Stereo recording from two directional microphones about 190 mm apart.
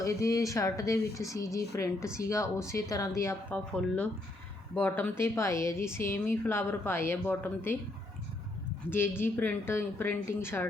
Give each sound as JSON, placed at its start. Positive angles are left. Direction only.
{"t": 0.0, "sound": "a woman's voice", "side_deg": 15}
{"t": 8.9, "sound": "a woman's voice", "side_deg": 10}